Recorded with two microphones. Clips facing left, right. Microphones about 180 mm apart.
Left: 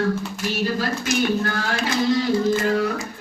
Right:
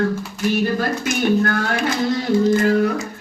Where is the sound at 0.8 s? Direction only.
55° right (ahead or behind).